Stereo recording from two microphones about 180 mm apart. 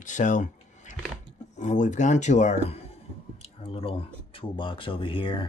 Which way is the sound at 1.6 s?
40° left (ahead or behind).